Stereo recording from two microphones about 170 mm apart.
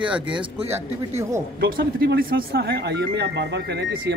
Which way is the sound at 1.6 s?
70° right (ahead or behind).